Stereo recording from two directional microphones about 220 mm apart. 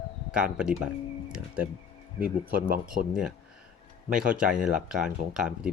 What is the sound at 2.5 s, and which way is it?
Speech, 45° right (ahead or behind).